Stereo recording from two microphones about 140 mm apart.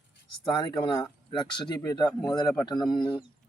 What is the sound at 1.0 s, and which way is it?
A man's voice, 30° left (ahead or behind).